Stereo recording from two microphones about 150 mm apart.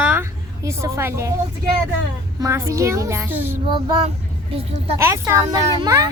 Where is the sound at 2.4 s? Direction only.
20° right (ahead or behind).